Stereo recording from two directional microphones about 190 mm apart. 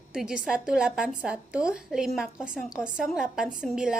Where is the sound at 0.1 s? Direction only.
5° right (ahead or behind).